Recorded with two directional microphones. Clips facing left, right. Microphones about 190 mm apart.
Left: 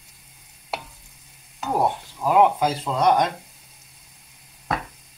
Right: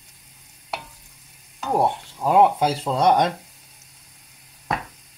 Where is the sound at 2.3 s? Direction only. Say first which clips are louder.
Right 1 dB; 30° right (ahead or behind).